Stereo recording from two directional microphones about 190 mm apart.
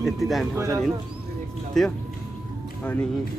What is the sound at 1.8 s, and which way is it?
Speech, centre (ahead or behind).